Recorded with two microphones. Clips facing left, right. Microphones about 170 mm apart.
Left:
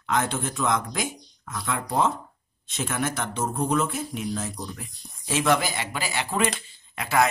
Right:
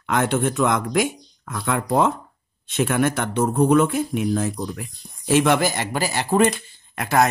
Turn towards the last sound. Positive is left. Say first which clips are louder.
# right 4 dB
turn(degrees=-50)  # may be behind; listen again after turning